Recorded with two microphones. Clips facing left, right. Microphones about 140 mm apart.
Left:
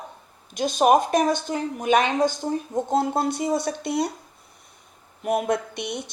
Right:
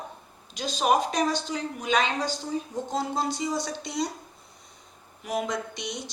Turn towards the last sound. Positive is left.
turn(degrees=60)  # may be behind; listen again after turning